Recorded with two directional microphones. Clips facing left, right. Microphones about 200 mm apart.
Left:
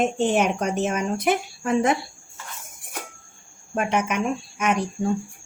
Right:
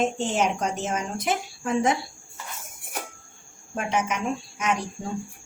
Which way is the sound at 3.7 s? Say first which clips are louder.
Left 3 dB; 60° left (ahead or behind).